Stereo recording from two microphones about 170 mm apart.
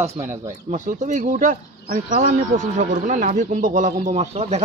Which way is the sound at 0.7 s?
45° right (ahead or behind).